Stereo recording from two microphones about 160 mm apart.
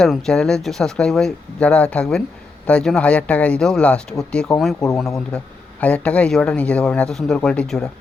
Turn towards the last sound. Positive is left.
turn(degrees=5)  # may be behind; listen again after turning